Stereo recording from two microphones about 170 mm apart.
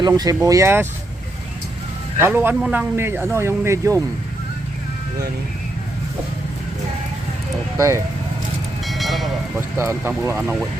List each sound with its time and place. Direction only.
0.2 s speech: 20° right (ahead or behind)
2.1 s speech: 15° right (ahead or behind)
7.8 s speech: 15° right (ahead or behind)
8.8 s music: centre (ahead or behind)
9.6 s speech: 15° right (ahead or behind)